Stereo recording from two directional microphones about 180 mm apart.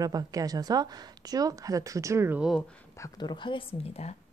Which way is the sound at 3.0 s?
25° left (ahead or behind).